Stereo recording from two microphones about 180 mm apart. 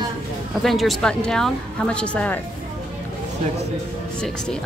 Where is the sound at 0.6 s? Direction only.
Centre (ahead or behind).